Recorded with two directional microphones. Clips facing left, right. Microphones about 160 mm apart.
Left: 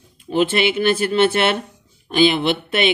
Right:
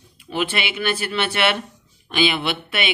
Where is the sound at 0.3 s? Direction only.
50° left (ahead or behind).